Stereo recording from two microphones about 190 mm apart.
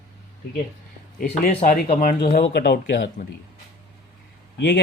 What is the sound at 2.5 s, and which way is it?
Speech, 60° left (ahead or behind).